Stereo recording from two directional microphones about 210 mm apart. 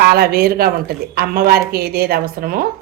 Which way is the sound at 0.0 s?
45° right (ahead or behind).